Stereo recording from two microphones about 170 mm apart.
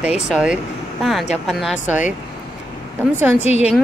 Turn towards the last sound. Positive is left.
turn(degrees=40)  # may be behind; listen again after turning